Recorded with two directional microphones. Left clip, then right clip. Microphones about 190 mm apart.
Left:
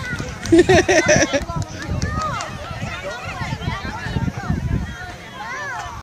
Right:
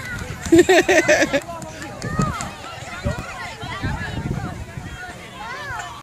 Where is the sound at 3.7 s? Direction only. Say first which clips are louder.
Even; 45° right (ahead or behind).